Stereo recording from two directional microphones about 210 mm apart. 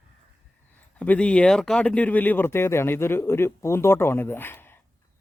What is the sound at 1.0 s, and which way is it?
Speech, 5° left (ahead or behind).